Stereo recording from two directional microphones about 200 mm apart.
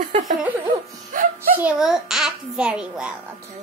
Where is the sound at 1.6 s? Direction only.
5° right (ahead or behind).